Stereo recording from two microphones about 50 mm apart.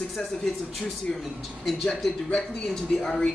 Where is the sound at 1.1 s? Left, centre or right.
Centre.